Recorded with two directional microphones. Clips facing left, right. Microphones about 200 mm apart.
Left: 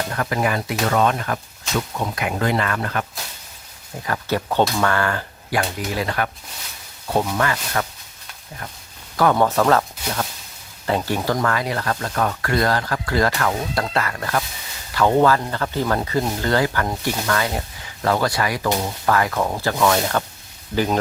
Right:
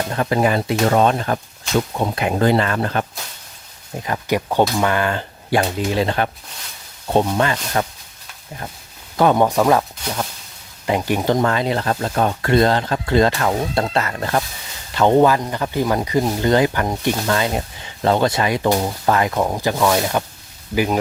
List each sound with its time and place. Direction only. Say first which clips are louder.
0.1 s speech: right 6 dB; 25° right (ahead or behind)
3.9 s speech: right 3 dB; 20° right (ahead or behind)
9.1 s speech: right 2 dB; 20° right (ahead or behind)
10.8 s speech: right 3 dB; 15° right (ahead or behind)